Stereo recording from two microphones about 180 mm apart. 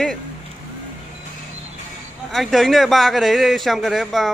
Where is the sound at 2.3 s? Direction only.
Centre (ahead or behind).